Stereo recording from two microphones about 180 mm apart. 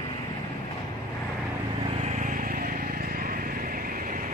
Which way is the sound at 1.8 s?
35° right (ahead or behind).